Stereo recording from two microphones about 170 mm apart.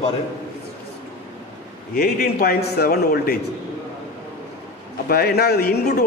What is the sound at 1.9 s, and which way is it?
A man's voice, 65° left (ahead or behind).